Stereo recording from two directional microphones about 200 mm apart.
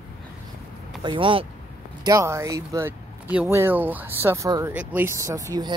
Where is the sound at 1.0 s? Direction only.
25° right (ahead or behind).